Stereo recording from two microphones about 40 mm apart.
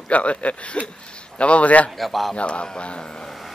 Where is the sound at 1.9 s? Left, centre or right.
Centre.